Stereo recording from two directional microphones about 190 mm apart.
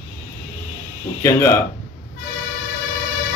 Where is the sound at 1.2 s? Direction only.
15° left (ahead or behind).